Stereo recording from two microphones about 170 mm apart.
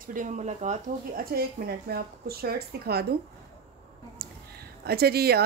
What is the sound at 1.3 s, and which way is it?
A woman's voice, 65° right (ahead or behind).